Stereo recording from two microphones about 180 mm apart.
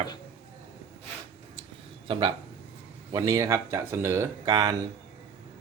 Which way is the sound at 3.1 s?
20° right (ahead or behind).